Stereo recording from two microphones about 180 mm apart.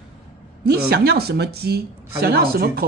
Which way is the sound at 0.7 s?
60° right (ahead or behind).